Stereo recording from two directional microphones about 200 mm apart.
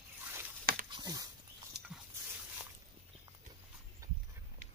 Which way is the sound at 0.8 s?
20° right (ahead or behind).